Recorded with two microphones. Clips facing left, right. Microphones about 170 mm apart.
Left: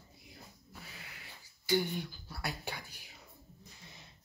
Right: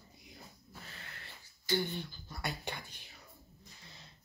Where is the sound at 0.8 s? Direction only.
10° left (ahead or behind).